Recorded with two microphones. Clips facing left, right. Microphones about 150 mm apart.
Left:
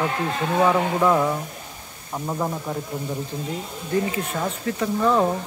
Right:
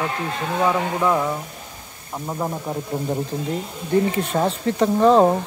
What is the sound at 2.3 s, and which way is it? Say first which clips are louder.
Speech: even; 5° right (ahead or behind).